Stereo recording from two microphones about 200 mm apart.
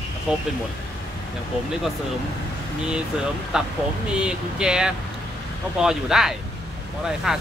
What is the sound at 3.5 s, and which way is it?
Speech, 5° right (ahead or behind).